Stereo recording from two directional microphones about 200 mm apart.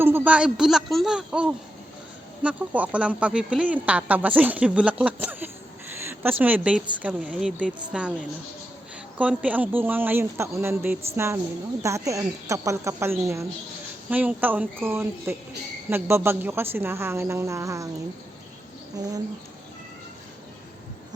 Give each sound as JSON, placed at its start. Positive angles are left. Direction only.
{"t": 0.0, "sound": "speech", "side_deg": -10}
{"t": 9.1, "sound": "speech", "side_deg": -5}
{"t": 19.0, "sound": "speech", "side_deg": -15}